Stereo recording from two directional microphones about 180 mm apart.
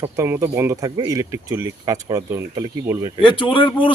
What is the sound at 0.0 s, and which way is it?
Speech, 15° right (ahead or behind).